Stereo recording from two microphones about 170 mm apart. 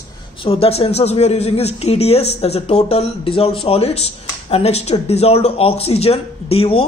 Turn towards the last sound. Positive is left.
turn(degrees=35)  # may be behind; listen again after turning